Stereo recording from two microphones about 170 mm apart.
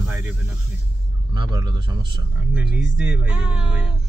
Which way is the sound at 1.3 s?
25° right (ahead or behind).